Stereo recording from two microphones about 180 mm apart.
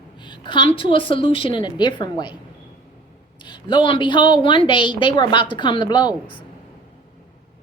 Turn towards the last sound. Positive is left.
turn(degrees=25)  # may be behind; listen again after turning